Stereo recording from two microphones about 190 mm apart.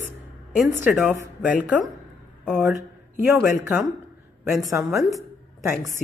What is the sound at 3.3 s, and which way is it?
A woman's voice, 15° right (ahead or behind).